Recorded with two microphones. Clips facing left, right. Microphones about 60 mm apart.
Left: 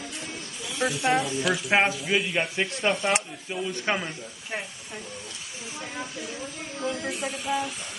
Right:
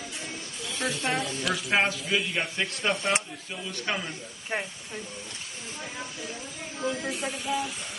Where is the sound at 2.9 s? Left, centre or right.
Centre.